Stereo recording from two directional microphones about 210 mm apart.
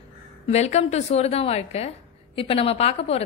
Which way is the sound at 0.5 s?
30° left (ahead or behind).